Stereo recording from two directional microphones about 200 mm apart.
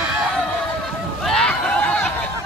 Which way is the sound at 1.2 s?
5° left (ahead or behind).